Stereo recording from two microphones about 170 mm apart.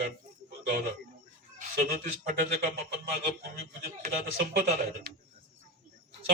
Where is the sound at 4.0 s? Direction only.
65° right (ahead or behind).